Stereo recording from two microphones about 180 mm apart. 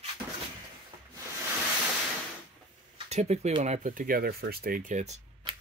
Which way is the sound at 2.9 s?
40° right (ahead or behind).